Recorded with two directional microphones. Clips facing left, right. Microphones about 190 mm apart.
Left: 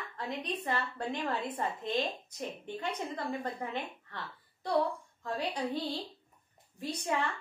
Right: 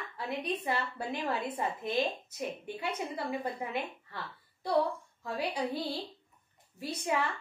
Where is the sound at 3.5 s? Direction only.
10° right (ahead or behind).